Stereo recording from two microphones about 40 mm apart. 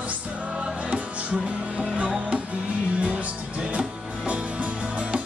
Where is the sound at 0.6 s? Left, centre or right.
Right.